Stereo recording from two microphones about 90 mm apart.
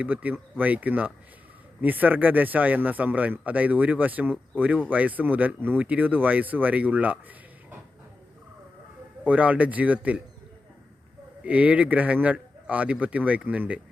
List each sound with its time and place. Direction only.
0.0 s speech: 20° right (ahead or behind)
9.2 s speech: 15° right (ahead or behind)
11.4 s speech: 15° right (ahead or behind)